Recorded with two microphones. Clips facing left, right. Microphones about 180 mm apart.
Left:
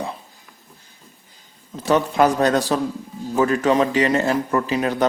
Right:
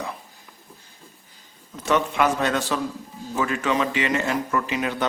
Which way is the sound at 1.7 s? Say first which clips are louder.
Left 4 dB; 35° left (ahead or behind).